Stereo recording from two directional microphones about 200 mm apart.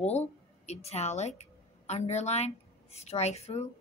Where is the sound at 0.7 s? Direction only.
30° left (ahead or behind).